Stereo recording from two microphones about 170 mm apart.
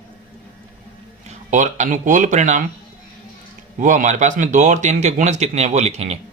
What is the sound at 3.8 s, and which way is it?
Speech, 50° right (ahead or behind).